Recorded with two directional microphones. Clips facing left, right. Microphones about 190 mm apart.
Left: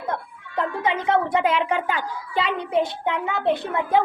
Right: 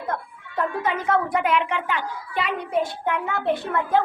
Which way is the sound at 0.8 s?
20° left (ahead or behind).